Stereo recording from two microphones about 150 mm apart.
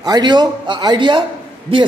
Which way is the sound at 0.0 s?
30° right (ahead or behind).